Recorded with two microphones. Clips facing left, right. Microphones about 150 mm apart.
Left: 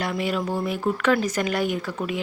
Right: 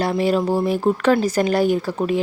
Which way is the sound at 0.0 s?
35° right (ahead or behind).